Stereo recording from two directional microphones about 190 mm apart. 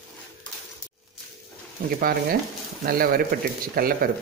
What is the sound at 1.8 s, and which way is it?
Speech, 50° right (ahead or behind).